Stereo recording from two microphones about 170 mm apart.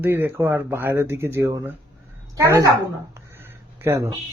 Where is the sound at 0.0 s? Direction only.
10° right (ahead or behind).